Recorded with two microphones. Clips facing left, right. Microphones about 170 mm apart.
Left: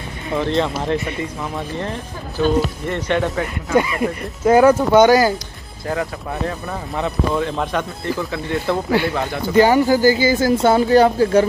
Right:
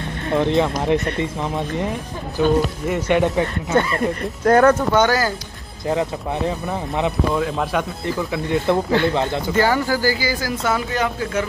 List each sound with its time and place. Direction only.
0.4 s speech: 15° right (ahead or behind)
0.9 s speech: centre (ahead or behind)
1.8 s speech: 15° right (ahead or behind)
3.7 s speech: 10° left (ahead or behind)
5.9 s speech: 20° right (ahead or behind)
7.3 s speech: 5° right (ahead or behind)
8.3 s speech: 20° right (ahead or behind)
9.5 s speech: 15° left (ahead or behind); by 11.4 s 35° left (ahead or behind)